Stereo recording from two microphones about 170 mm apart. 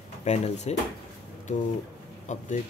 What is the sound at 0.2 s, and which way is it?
Speech, 40° left (ahead or behind).